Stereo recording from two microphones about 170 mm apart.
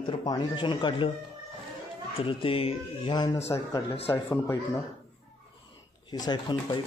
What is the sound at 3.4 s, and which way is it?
Speech, 15° left (ahead or behind).